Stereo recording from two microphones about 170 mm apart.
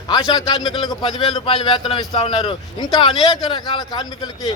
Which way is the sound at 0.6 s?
25° left (ahead or behind).